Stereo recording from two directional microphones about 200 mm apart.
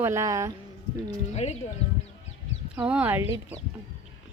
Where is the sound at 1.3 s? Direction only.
35° left (ahead or behind).